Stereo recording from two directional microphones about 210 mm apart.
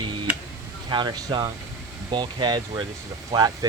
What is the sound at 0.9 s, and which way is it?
Speech, 20° right (ahead or behind).